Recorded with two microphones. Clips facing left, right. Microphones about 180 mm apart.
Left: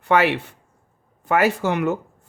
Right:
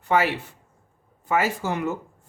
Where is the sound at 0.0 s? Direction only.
70° left (ahead or behind).